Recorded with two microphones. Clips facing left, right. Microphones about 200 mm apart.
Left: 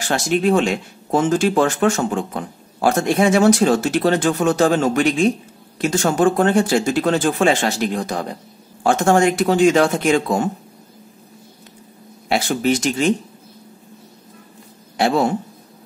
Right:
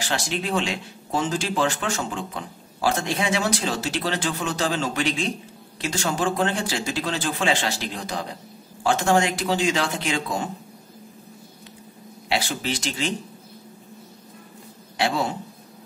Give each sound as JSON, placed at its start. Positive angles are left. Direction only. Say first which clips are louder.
{"t": 0.0, "sound": "speech", "louder": "left 9 dB", "side_deg": 50}
{"t": 12.3, "sound": "speech", "louder": "left 8 dB", "side_deg": 50}
{"t": 15.0, "sound": "speech", "louder": "left 7 dB", "side_deg": 50}